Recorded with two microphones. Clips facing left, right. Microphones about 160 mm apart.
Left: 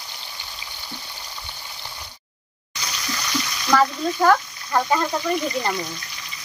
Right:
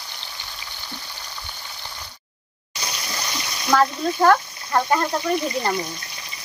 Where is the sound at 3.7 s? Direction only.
5° right (ahead or behind).